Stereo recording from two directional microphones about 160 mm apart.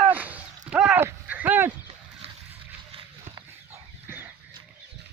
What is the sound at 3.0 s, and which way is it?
Chicken, 35° right (ahead or behind).